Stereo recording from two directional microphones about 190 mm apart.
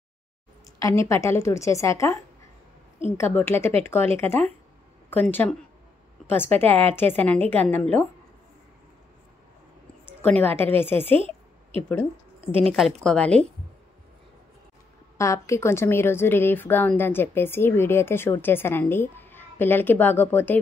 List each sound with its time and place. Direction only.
0.7 s a woman's voice: 15° left (ahead or behind)
3.2 s a woman's voice: 10° left (ahead or behind)
10.2 s a woman's voice: 10° left (ahead or behind)
11.1 s a sound: 30° right (ahead or behind)
12.4 s speech: 30° right (ahead or behind)
12.7 s a woman's voice: centre (ahead or behind)
15.1 s a woman's voice: 15° left (ahead or behind)